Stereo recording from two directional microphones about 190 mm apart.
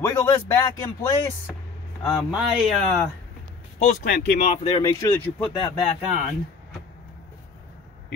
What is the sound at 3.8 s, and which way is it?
Speech, 40° left (ahead or behind).